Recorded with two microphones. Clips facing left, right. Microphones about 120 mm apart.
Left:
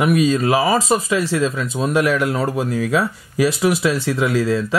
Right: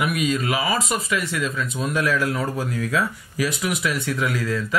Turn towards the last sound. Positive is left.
turn(degrees=30)  # may be behind; listen again after turning